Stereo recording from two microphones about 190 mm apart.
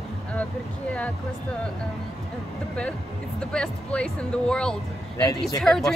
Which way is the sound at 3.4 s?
5° left (ahead or behind).